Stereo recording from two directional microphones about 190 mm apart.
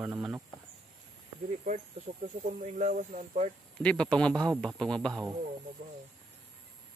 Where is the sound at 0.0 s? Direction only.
10° right (ahead or behind).